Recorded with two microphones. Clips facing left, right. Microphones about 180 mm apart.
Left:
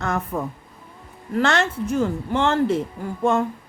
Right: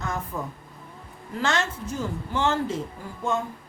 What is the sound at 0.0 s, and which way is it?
A woman's voice, 65° left (ahead or behind).